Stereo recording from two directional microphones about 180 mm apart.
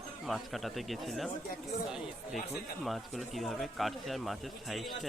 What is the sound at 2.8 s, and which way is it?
Speech, centre (ahead or behind).